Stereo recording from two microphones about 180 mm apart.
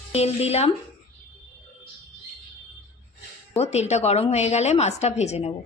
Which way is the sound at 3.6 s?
35° left (ahead or behind).